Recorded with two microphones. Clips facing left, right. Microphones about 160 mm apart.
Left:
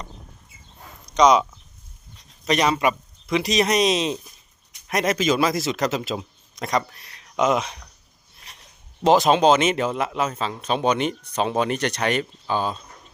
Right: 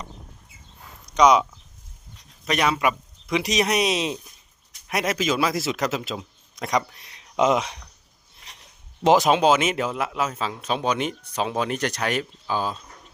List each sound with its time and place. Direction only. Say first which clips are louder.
1.1 s speech: left 1 dB; 10° right (ahead or behind)
2.5 s speech: left 2 dB; 5° right (ahead or behind)
6.7 s speech: even; 15° right (ahead or behind)
9.0 s speech: left 1 dB; 10° right (ahead or behind)